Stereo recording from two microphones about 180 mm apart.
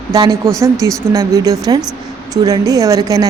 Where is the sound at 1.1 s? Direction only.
20° right (ahead or behind).